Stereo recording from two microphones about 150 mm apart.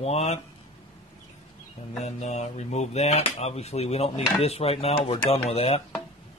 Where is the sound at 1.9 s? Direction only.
50° left (ahead or behind).